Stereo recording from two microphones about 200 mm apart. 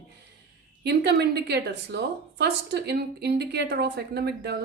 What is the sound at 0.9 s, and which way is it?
A woman's voice, 55° right (ahead or behind).